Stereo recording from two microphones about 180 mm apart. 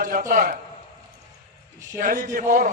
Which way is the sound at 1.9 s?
50° right (ahead or behind).